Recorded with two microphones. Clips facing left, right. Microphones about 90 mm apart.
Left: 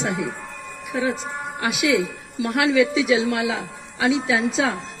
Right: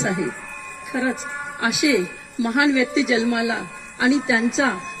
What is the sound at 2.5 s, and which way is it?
Speech, centre (ahead or behind).